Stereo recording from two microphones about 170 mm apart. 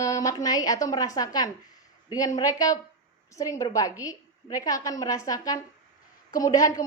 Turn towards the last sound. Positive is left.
turn(degrees=20)  # may be behind; listen again after turning